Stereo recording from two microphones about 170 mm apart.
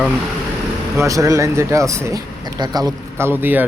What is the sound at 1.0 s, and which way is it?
Speech, 20° right (ahead or behind).